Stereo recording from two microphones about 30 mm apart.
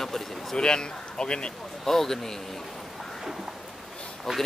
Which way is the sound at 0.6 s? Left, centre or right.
Left.